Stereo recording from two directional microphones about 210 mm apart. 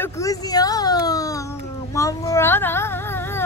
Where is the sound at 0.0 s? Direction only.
15° left (ahead or behind).